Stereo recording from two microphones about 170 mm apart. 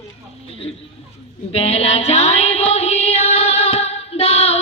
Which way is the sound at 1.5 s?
35° left (ahead or behind).